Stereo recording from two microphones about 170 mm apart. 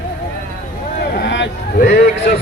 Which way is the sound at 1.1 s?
90° left.